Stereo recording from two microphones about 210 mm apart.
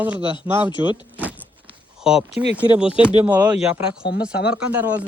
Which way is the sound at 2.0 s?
5° right (ahead or behind).